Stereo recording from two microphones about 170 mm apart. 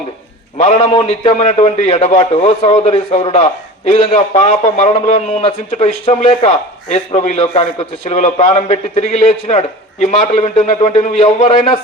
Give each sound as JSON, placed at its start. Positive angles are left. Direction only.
{"t": 0.6, "sound": "a man's voice", "side_deg": 40}